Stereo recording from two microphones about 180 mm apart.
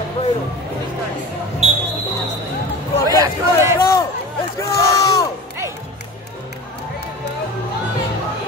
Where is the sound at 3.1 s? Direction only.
20° right (ahead or behind).